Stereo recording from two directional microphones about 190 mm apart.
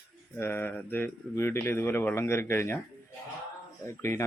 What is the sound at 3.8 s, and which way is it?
Speech, 15° left (ahead or behind).